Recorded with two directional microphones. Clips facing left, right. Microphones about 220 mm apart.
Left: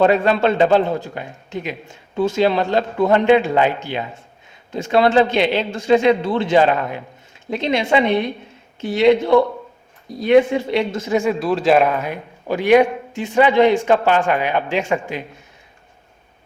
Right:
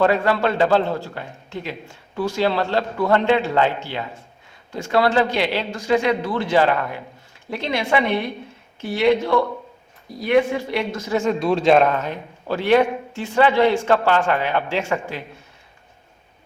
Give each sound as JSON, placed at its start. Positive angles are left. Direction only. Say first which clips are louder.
{"t": 0.0, "sound": "a man's voice", "louder": "left 3 dB", "side_deg": 20}
{"t": 11.2, "sound": "a man's voice", "louder": "right 3 dB", "side_deg": 5}